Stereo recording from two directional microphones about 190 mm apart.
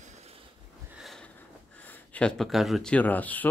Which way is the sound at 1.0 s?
Centre (ahead or behind).